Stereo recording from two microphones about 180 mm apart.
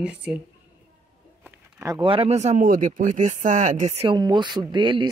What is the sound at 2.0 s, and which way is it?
Speech, 30° right (ahead or behind).